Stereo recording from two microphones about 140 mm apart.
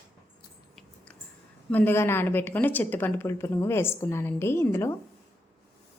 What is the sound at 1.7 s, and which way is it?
A woman's voice, 15° left (ahead or behind).